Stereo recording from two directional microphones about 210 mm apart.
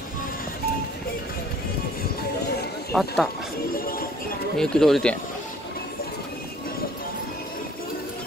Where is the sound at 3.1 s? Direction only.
Centre (ahead or behind).